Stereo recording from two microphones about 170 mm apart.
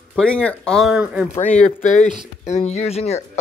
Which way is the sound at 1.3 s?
45° left (ahead or behind).